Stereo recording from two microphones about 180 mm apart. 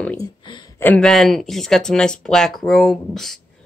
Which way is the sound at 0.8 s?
5° left (ahead or behind).